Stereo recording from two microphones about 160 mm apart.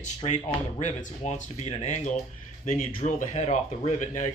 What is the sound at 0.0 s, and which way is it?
Speech, 45° left (ahead or behind).